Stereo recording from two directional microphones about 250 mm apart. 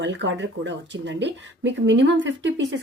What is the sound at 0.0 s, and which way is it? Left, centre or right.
Speech, right.